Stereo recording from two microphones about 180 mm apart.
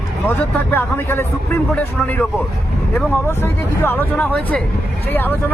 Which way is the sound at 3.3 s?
15° left (ahead or behind).